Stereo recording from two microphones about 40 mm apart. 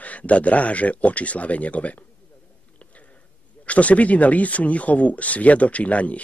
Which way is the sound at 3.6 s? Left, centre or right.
Left.